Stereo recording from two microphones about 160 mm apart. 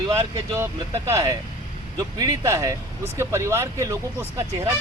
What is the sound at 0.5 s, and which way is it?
Speech, 15° right (ahead or behind).